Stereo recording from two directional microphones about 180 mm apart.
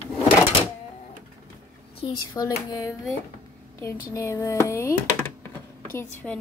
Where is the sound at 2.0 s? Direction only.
20° left (ahead or behind).